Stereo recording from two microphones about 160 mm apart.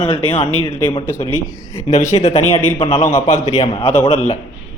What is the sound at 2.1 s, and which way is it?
Speech, 40° left (ahead or behind).